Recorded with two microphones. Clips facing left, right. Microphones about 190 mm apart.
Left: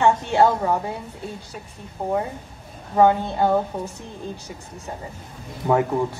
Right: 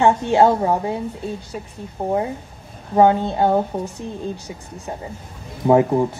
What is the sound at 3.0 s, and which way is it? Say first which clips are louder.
Speech: right 2 dB; 20° right (ahead or behind).